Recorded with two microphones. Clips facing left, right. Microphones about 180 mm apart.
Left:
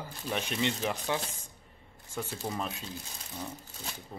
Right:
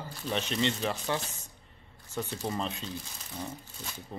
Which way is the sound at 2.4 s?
5° left (ahead or behind).